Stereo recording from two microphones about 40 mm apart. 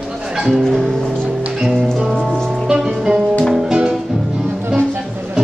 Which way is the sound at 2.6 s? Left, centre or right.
Centre.